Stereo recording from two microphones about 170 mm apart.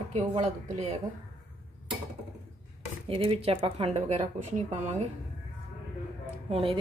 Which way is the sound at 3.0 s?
30° right (ahead or behind).